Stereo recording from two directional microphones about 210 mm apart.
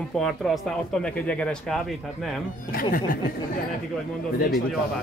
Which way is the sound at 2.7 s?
45° left (ahead or behind).